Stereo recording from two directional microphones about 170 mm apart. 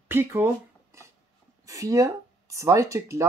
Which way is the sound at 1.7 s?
20° right (ahead or behind).